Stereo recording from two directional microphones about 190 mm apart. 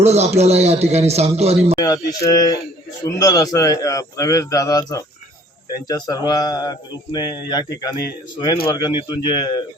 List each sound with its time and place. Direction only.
0.0 s speech: 35° right (ahead or behind)
1.8 s speech: 20° left (ahead or behind)